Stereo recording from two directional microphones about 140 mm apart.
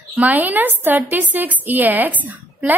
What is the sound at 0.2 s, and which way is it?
A woman's voice, 10° right (ahead or behind).